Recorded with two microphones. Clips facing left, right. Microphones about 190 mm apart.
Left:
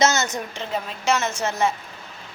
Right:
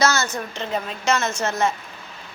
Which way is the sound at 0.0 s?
20° left (ahead or behind).